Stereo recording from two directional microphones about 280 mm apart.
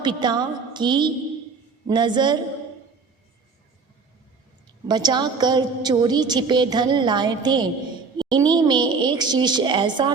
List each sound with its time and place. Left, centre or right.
0.0 s a woman's voice: centre
4.9 s a woman's voice: centre